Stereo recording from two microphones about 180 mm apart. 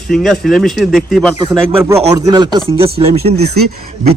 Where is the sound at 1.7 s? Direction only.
15° right (ahead or behind); by 3.5 s 35° right (ahead or behind).